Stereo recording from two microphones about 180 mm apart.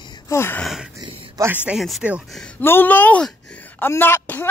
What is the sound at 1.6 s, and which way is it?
Speech, centre (ahead or behind).